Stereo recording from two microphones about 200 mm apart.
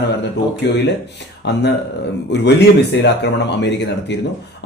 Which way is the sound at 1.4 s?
60° left (ahead or behind).